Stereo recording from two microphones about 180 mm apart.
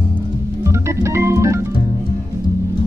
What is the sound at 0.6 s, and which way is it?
Organ, 15° right (ahead or behind).